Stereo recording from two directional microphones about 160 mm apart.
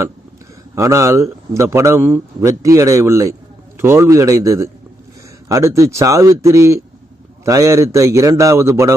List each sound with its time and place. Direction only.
0.8 s a man's voice: 20° right (ahead or behind)